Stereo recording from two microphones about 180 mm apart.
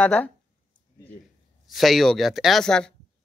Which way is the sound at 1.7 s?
Centre (ahead or behind).